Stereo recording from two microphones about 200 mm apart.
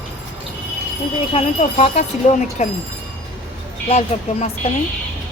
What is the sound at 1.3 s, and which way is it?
Speech, 35° left (ahead or behind).